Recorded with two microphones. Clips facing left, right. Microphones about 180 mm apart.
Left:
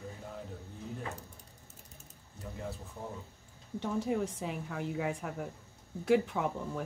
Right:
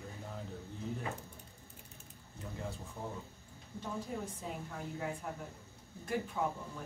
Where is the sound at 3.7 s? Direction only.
80° left.